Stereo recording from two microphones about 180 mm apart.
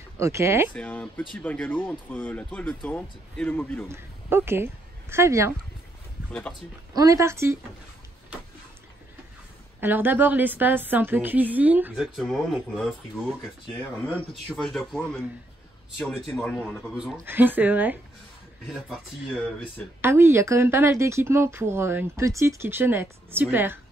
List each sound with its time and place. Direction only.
0.2 s a woman's voice: 15° right (ahead or behind)
0.7 s speech: 5° left (ahead or behind)
3.9 s a man's voice: 15° right (ahead or behind)
6.3 s a man's voice: 5° left (ahead or behind)
7.0 s a woman's voice: 15° right (ahead or behind)
9.8 s a woman's voice: 10° right (ahead or behind)
16.3 s a woman's voice: 5° left (ahead or behind)
20.0 s a woman's voice: 15° right (ahead or behind)